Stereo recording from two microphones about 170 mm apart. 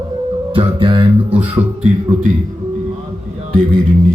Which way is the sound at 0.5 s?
30° right (ahead or behind).